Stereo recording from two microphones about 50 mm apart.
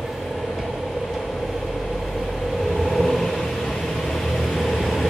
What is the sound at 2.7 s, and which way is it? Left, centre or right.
Vehicle, centre.